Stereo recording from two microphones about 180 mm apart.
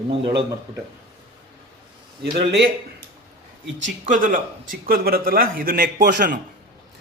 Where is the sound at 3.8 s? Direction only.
45° right (ahead or behind).